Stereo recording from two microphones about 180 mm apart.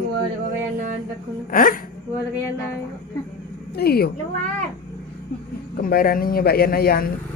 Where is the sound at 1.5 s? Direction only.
50° left (ahead or behind).